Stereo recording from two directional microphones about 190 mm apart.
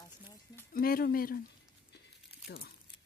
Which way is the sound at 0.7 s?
50° left (ahead or behind).